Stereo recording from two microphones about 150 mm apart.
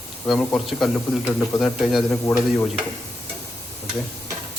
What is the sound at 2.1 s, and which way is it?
Speech, 15° left (ahead or behind).